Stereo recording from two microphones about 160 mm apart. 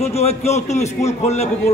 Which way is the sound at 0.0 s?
40° left (ahead or behind).